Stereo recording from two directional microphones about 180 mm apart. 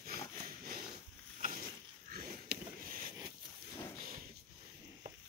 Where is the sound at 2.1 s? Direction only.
55° right (ahead or behind).